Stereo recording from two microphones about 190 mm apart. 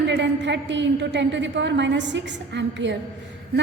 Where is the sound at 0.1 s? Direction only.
65° right (ahead or behind).